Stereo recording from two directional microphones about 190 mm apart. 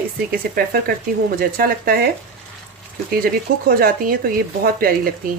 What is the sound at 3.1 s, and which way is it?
Speech, 50° right (ahead or behind).